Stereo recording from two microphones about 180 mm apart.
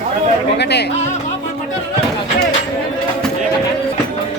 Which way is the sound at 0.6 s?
65° left (ahead or behind).